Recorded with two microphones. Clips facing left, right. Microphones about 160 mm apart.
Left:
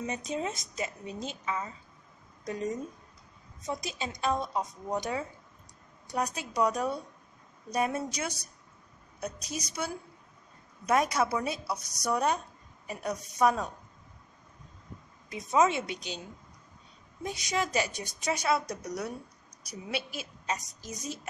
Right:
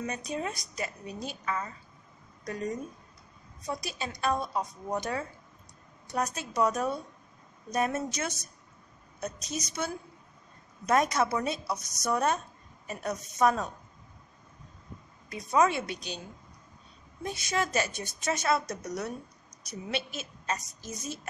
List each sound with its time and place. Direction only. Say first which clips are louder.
0.0 s a woman's voice: left 1 dB; 20° left (ahead or behind)
15.2 s a woman's voice: even; 20° left (ahead or behind)
17.2 s a woman's voice: right 1 dB; 15° left (ahead or behind)